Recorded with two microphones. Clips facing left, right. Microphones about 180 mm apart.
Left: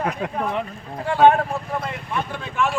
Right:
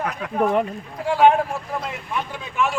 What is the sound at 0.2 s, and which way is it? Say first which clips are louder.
Speech: left 3 dB; 35° left (ahead or behind).